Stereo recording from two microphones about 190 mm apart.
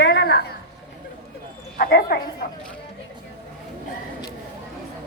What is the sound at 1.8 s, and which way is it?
Speech, 55° left (ahead or behind).